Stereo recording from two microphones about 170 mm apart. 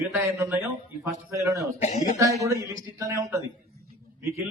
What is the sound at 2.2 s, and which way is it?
A man's voice, 20° right (ahead or behind).